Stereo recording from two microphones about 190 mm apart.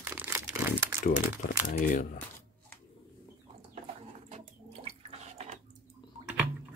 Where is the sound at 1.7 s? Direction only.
45° left (ahead or behind).